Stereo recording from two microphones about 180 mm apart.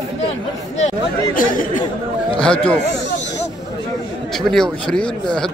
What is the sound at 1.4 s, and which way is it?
Speech, 50° left (ahead or behind).